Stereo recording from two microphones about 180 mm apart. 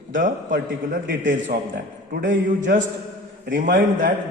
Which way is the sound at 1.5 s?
60° right (ahead or behind).